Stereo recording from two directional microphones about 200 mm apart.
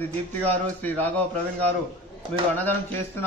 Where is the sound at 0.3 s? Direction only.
10° left (ahead or behind).